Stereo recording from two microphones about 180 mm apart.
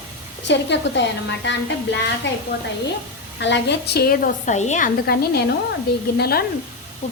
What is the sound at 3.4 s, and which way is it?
A woman's voice, 80° left.